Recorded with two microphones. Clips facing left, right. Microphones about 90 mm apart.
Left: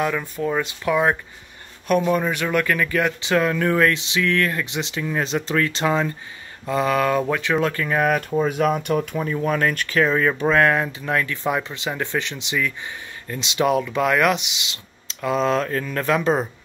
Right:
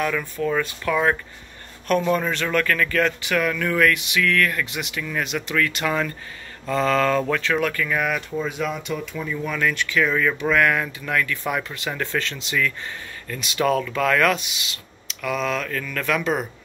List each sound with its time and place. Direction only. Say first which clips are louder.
0.0 s speech: left 1 dB; 20° left (ahead or behind)
7.7 s speech: left 4 dB; 30° left (ahead or behind)
8.3 s speech: left 6 dB; 45° left (ahead or behind)